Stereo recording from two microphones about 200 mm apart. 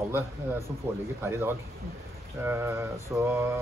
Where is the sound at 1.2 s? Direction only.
10° right (ahead or behind).